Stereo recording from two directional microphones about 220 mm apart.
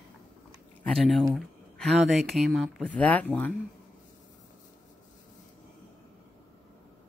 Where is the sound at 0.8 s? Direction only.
Centre (ahead or behind).